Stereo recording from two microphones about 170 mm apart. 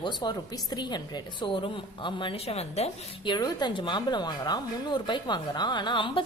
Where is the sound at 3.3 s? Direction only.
25° left (ahead or behind).